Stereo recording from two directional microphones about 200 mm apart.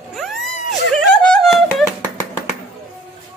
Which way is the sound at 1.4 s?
Centre (ahead or behind).